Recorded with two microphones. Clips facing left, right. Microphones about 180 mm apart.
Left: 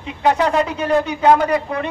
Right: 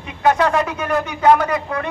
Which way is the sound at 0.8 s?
25° left (ahead or behind).